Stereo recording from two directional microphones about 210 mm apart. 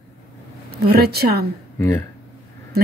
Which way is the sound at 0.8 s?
50° right (ahead or behind).